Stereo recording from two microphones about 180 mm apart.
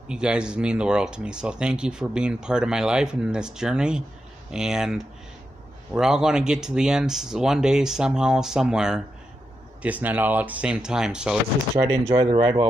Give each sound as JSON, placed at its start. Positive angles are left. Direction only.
{"t": 0.1, "sound": "speech", "side_deg": -5}
{"t": 11.8, "sound": "speech", "side_deg": -30}